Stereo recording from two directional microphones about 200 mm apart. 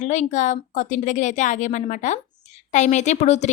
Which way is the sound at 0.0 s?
35° left (ahead or behind).